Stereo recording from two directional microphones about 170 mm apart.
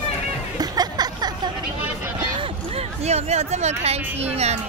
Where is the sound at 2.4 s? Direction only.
35° right (ahead or behind).